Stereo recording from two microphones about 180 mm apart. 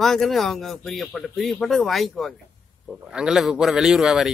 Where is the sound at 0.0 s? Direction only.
Centre (ahead or behind).